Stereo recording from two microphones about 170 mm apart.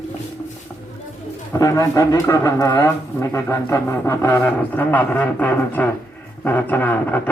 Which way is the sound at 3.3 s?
15° left (ahead or behind).